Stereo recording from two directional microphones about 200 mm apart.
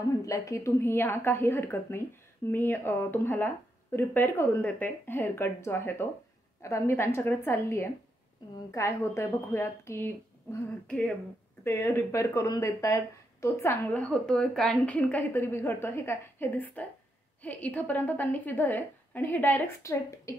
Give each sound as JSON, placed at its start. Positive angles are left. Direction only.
{"t": 0.2, "sound": "speech", "side_deg": 15}